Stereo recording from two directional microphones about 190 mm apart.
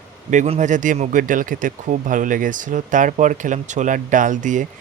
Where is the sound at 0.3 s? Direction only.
35° right (ahead or behind).